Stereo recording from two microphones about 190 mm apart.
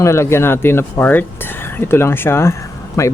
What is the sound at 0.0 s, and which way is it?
Speech, 15° left (ahead or behind).